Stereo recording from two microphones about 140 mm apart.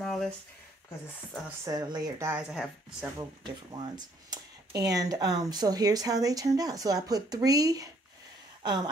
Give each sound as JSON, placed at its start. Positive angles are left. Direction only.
{"t": 0.0, "sound": "a sound", "side_deg": 5}
{"t": 1.6, "sound": "speech", "side_deg": -30}
{"t": 2.3, "sound": "speech", "side_deg": -5}
{"t": 3.2, "sound": "speech", "side_deg": -30}